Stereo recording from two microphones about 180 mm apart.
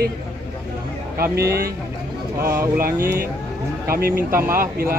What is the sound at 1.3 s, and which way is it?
Speech, 60° right (ahead or behind).